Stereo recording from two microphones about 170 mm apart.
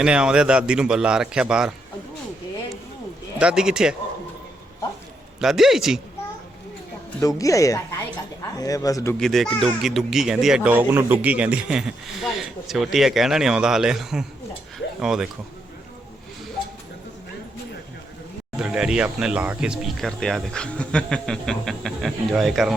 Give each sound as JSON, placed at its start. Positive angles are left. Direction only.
{"t": 0.0, "sound": "speech", "side_deg": -5}
{"t": 3.3, "sound": "speech", "side_deg": -5}
{"t": 5.4, "sound": "speech", "side_deg": 0}
{"t": 7.2, "sound": "speech", "side_deg": 20}
{"t": 9.1, "sound": "speech", "side_deg": 0}
{"t": 18.6, "sound": "speech", "side_deg": -5}